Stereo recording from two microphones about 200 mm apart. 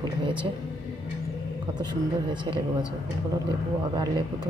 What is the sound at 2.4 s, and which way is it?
Speech, 20° right (ahead or behind).